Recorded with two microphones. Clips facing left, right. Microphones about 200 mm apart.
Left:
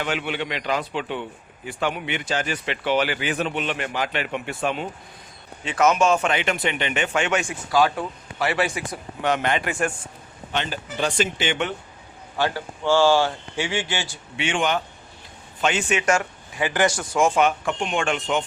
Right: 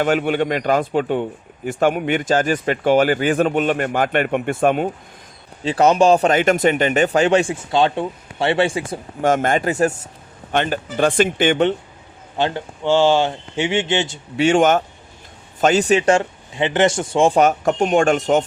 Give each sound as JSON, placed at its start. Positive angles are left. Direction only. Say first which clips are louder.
{"t": 0.0, "sound": "a man's voice", "louder": "right 9 dB", "side_deg": -45}
{"t": 5.6, "sound": "speech", "louder": "right 5 dB", "side_deg": -35}
{"t": 9.2, "sound": "a man's voice", "louder": "right 6 dB", "side_deg": -45}
{"t": 10.5, "sound": "a man's voice", "louder": "right 8 dB", "side_deg": -50}
{"t": 12.4, "sound": "speech", "louder": "right 3 dB", "side_deg": -20}
{"t": 14.3, "sound": "a man's voice", "louder": "right 9 dB", "side_deg": -40}